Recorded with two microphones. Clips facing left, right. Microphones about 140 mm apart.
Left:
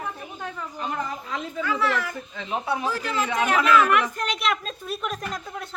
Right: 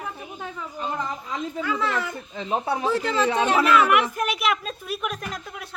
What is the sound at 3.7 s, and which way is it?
Speech, 10° right (ahead or behind).